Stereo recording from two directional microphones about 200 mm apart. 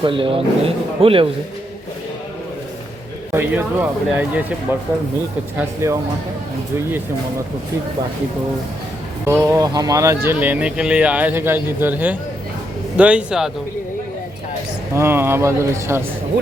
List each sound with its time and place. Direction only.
0.0 s speech: 25° right (ahead or behind)
3.3 s speech: 10° right (ahead or behind)
5.5 s speech: 15° right (ahead or behind)
9.2 s speech: 15° right (ahead or behind)
14.9 s speech: 10° right (ahead or behind)